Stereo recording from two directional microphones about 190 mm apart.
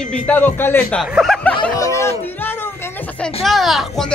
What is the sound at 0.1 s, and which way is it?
Speech, 10° left (ahead or behind).